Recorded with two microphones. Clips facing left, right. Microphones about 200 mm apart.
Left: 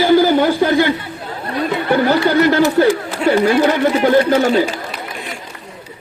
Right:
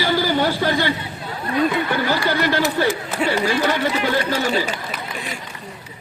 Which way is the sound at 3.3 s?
55° left (ahead or behind).